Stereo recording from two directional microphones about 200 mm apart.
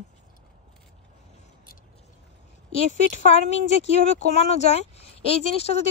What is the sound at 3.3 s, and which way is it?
Speech, 30° left (ahead or behind).